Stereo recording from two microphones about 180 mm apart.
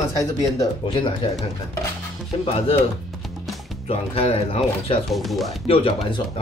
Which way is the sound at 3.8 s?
30° left (ahead or behind).